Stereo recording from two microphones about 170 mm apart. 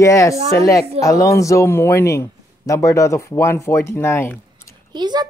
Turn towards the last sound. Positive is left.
turn(degrees=-25)  # may be behind; listen again after turning